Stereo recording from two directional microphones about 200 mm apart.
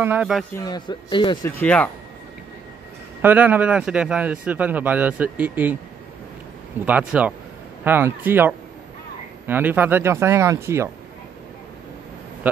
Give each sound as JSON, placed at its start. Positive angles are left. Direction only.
{"t": 0.0, "sound": "speech", "side_deg": -5}
{"t": 0.6, "sound": "speech", "side_deg": 20}
{"t": 1.6, "sound": "speech", "side_deg": 5}
{"t": 3.2, "sound": "a man's voice", "side_deg": -10}
{"t": 6.9, "sound": "a man's voice", "side_deg": -5}